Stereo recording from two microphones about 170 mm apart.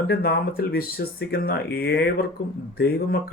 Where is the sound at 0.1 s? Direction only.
65° left (ahead or behind).